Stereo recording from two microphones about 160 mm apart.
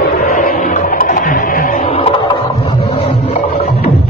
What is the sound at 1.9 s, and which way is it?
Music, 35° left (ahead or behind).